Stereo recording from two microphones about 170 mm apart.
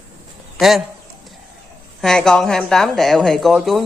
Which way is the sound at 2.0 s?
5° left (ahead or behind).